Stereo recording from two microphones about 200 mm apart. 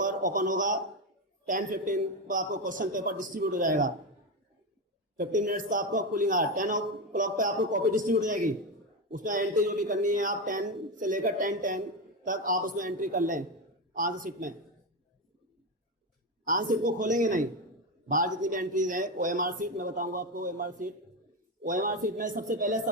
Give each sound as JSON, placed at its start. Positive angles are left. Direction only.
{"t": 0.0, "sound": "a man's voice", "side_deg": -40}
{"t": 5.1, "sound": "a man's voice", "side_deg": -40}
{"t": 16.4, "sound": "a man's voice", "side_deg": -40}